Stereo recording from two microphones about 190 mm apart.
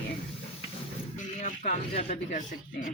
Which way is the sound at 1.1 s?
40° left (ahead or behind).